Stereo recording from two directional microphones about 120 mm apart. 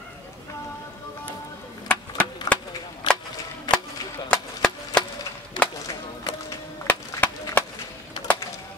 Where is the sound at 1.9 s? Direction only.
10° left (ahead or behind).